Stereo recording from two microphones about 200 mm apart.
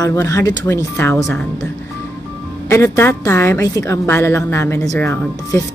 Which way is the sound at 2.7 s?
15° left (ahead or behind).